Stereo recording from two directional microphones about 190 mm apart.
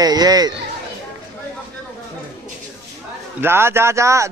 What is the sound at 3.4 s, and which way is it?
Speech, 10° right (ahead or behind).